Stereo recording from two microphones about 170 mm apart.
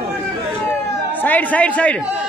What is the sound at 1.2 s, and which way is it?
Speech, 10° left (ahead or behind).